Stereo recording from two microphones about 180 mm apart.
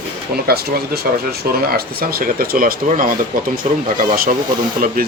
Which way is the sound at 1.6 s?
55° right (ahead or behind).